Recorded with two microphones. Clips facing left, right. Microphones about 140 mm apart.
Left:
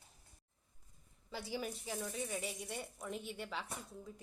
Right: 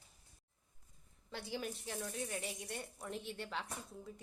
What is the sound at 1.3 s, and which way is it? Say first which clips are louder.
Speech: left 1 dB; 5° left (ahead or behind).